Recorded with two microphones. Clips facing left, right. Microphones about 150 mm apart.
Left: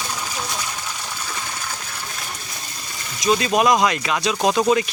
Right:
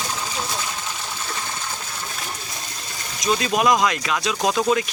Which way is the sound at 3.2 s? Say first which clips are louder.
Left 2 dB; centre (ahead or behind).